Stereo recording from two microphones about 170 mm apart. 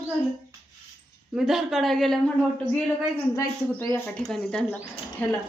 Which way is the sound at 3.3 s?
15° left (ahead or behind).